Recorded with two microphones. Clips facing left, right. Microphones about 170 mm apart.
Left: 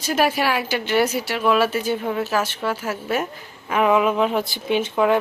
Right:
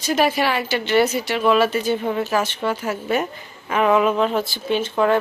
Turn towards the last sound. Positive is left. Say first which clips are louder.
# even
turn(degrees=10)  # may be behind; listen again after turning